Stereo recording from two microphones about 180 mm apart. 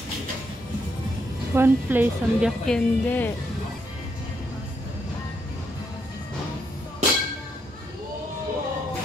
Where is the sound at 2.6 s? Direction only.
5° left (ahead or behind).